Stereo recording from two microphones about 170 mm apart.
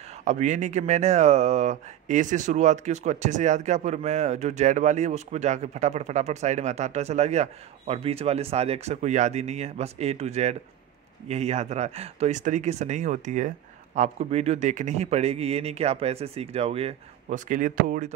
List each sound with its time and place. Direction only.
0.2 s speech: 45° right (ahead or behind)
17.5 s speech: 50° right (ahead or behind)